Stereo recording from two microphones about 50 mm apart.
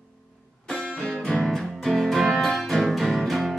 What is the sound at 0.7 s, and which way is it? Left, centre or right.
Music, centre.